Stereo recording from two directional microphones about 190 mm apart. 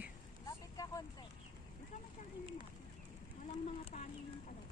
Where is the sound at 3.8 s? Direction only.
40° left (ahead or behind).